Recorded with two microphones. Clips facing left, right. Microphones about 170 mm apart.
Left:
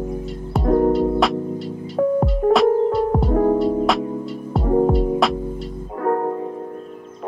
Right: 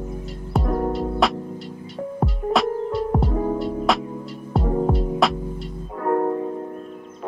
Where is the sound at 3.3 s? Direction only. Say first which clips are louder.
Left 7 dB; 50° left (ahead or behind).